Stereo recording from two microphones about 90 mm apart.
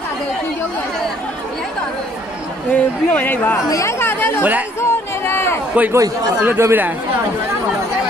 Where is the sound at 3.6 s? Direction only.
35° left (ahead or behind).